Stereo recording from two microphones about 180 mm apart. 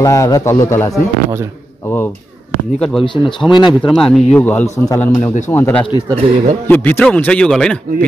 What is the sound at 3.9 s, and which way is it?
Speech, 5° left (ahead or behind).